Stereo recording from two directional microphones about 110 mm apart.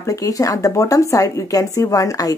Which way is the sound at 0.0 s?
30° left (ahead or behind).